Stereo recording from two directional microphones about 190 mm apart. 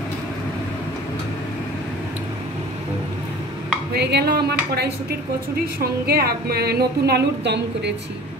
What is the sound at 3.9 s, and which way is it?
A woman's voice, 60° right (ahead or behind).